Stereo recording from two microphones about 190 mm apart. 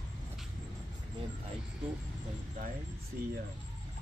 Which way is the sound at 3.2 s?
50° right (ahead or behind).